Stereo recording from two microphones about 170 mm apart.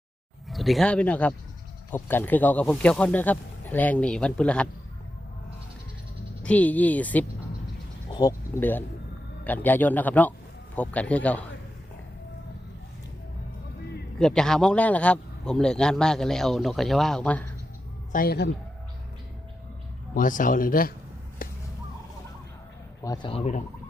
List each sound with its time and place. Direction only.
0.4 s speech: centre (ahead or behind)
6.4 s speech: 10° left (ahead or behind)
8.1 s speech: 20° left (ahead or behind)
14.2 s a man's voice: 5° left (ahead or behind)
18.1 s a man's voice: 60° left (ahead or behind)
20.1 s a man's voice: 50° left (ahead or behind)
21.4 s whip: 55° left (ahead or behind)
23.0 s speech: 25° left (ahead or behind)